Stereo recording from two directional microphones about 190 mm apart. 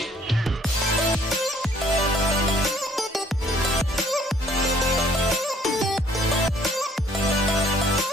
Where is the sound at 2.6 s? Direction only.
Centre (ahead or behind).